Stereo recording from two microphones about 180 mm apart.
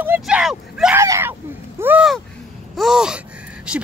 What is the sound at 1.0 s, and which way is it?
Speech, 15° right (ahead or behind).